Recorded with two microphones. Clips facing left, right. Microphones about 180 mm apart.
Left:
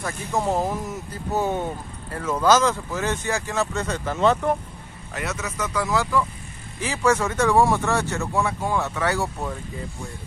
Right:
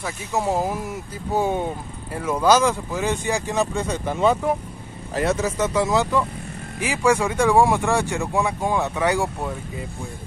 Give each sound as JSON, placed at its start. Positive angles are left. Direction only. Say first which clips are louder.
{"t": 0.3, "sound": "speech", "louder": "right 1 dB", "side_deg": -5}
{"t": 5.1, "sound": "speech", "louder": "right 8 dB", "side_deg": -30}